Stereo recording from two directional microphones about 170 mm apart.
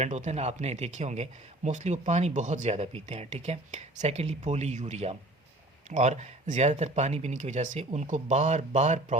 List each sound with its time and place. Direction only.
0.0 s speech: 40° right (ahead or behind)